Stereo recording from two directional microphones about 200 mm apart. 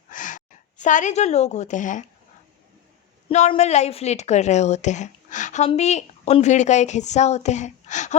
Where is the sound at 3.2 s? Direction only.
30° left (ahead or behind).